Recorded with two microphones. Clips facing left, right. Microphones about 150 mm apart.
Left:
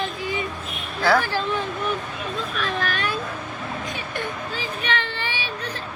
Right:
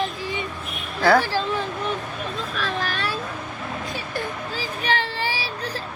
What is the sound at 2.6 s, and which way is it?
Vehicle, 35° right (ahead or behind).